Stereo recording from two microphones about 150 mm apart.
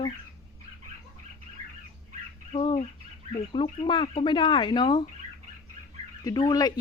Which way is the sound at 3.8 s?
35° left (ahead or behind).